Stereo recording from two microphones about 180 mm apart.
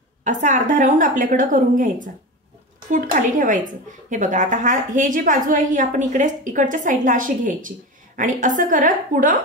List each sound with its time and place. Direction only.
0.2 s a woman's voice: 40° right (ahead or behind)